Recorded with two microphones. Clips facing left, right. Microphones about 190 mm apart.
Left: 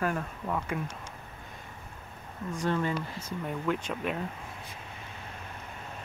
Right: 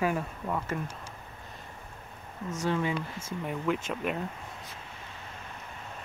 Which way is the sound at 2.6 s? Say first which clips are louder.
Even; 10° right (ahead or behind).